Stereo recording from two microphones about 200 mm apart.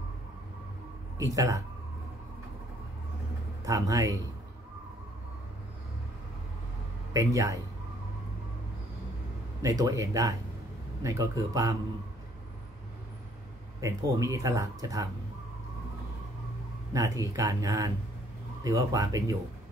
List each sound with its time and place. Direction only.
1.1 s speech: 15° right (ahead or behind)
3.6 s speech: 15° right (ahead or behind)
7.2 s speech: 15° right (ahead or behind)
9.6 s speech: 15° right (ahead or behind)
13.7 s speech: 15° right (ahead or behind)
16.9 s speech: 15° right (ahead or behind)